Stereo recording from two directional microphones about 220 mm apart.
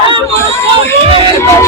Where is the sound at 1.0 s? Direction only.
25° right (ahead or behind).